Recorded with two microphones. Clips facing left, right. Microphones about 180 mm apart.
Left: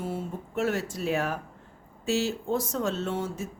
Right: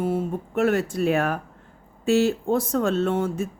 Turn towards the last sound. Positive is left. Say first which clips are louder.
# right 8 dB
turn(degrees=-55)  # may be behind; listen again after turning